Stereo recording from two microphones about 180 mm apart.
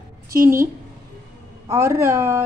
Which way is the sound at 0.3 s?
15° right (ahead or behind).